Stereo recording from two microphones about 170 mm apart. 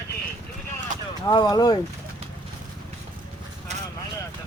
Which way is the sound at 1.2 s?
25° left (ahead or behind).